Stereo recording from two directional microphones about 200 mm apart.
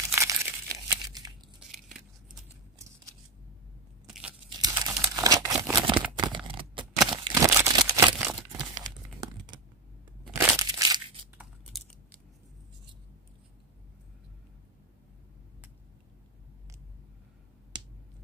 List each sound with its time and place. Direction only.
0.1 s crumpling: 15° right (ahead or behind)
1.6 s biting: centre (ahead or behind)
2.8 s scissors: 15° right (ahead or behind)
4.1 s crunch: 5° right (ahead or behind)
4.6 s crumpling: 20° right (ahead or behind)
6.1 s a sound: 25° right (ahead or behind)
8.2 s crumpling: 10° right (ahead or behind)
8.8 s crumpling: 20° right (ahead or behind)
10.3 s crushing: 15° right (ahead or behind)